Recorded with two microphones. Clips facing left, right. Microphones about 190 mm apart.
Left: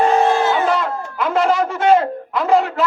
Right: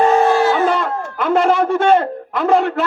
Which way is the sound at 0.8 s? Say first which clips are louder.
Right 1 dB; 55° right (ahead or behind).